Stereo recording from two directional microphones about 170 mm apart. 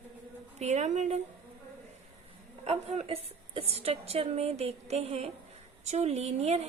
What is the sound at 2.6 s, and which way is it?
A woman's voice, 40° right (ahead or behind).